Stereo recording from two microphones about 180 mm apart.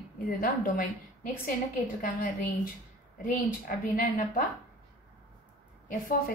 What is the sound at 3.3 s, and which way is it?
A woman's voice, 50° left (ahead or behind).